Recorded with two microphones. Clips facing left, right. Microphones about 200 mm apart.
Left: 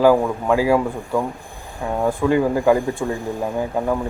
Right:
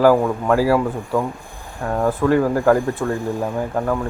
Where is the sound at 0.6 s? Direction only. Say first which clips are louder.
Even; 15° left (ahead or behind).